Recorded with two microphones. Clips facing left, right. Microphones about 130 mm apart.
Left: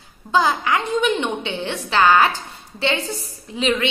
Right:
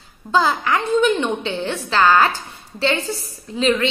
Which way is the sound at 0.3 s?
20° left (ahead or behind).